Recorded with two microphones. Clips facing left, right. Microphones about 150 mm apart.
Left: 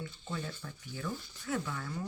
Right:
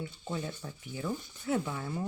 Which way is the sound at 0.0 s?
20° right (ahead or behind).